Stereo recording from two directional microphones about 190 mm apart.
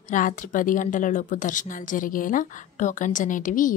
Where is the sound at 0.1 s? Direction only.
45° left (ahead or behind).